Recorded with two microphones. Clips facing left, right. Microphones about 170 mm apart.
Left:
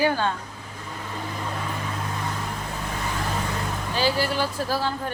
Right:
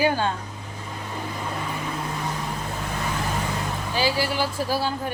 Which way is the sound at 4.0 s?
10° right (ahead or behind).